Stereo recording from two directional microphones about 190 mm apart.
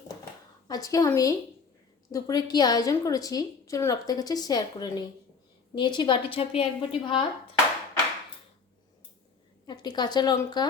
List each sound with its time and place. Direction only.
0.7 s a woman's voice: 20° left (ahead or behind)
9.6 s speech: 20° left (ahead or behind)